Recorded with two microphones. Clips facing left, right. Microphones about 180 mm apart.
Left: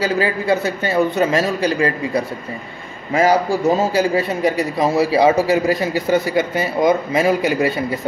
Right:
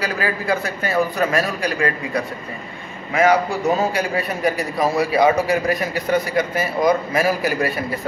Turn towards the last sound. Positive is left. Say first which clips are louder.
# left 4 dB
turn(degrees=25)  # may be behind; listen again after turning